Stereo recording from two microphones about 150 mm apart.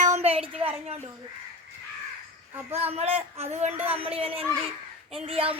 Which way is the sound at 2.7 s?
45° right (ahead or behind).